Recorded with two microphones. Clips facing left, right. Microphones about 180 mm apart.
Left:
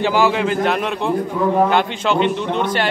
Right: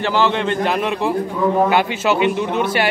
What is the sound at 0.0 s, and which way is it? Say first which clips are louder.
A man's voice: left 1 dB; 10° left (ahead or behind).